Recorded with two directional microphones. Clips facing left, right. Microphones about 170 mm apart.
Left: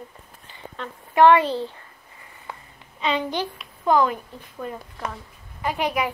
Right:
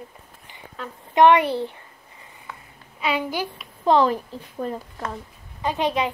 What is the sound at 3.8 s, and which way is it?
Speech, 30° right (ahead or behind).